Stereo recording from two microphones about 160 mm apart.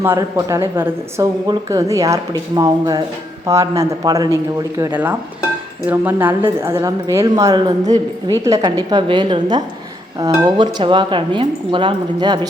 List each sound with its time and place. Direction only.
0.0 s a woman's voice: 15° right (ahead or behind)
4.8 s a woman's voice: 10° right (ahead or behind); by 12.5 s 25° right (ahead or behind)